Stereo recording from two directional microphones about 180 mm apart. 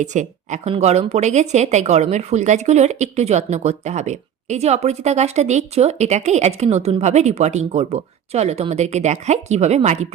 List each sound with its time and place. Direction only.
0.0 s speech: 40° right (ahead or behind)